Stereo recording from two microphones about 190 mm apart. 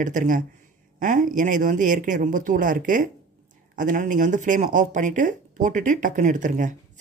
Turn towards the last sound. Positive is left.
turn(degrees=-40)  # may be behind; listen again after turning